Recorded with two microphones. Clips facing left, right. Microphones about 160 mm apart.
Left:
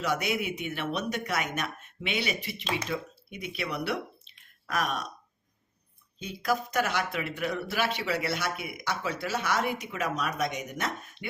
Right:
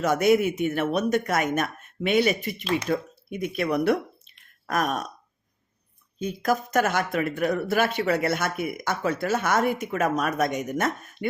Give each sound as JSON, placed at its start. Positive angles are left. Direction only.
{"t": 0.0, "sound": "speech", "side_deg": -45}
{"t": 6.1, "sound": "speech", "side_deg": -45}